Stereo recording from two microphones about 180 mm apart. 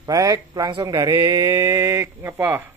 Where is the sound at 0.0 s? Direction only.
20° right (ahead or behind).